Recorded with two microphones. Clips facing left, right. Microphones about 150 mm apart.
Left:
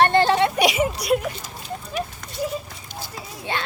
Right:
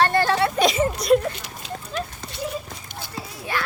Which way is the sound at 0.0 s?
20° left (ahead or behind).